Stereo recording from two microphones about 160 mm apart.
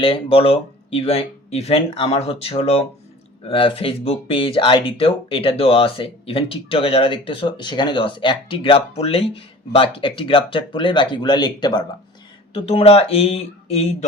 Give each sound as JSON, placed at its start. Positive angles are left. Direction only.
{"t": 0.0, "sound": "speech", "side_deg": 35}
{"t": 12.5, "sound": "speech", "side_deg": 40}